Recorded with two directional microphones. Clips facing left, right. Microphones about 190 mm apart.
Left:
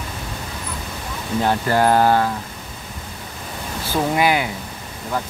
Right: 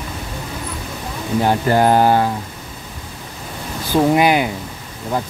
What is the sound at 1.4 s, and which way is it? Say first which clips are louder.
Speech: right 2 dB; 20° right (ahead or behind).